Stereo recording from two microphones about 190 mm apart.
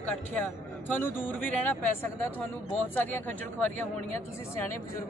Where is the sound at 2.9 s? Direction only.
10° left (ahead or behind).